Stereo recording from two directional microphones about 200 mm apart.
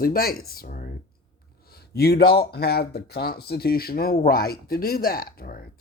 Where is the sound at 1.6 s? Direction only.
50° left (ahead or behind).